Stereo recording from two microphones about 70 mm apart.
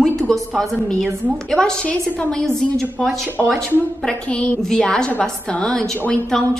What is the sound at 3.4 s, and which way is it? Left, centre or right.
Speech, centre.